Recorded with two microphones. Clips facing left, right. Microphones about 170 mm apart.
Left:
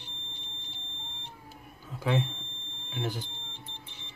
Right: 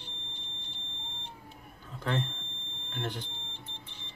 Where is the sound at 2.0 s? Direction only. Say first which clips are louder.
Left 4 dB; 10° left (ahead or behind).